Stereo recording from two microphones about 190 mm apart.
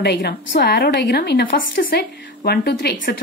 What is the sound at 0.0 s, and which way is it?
A woman's voice, 60° left (ahead or behind).